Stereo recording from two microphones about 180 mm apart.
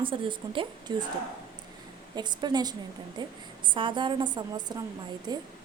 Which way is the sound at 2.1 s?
25° right (ahead or behind).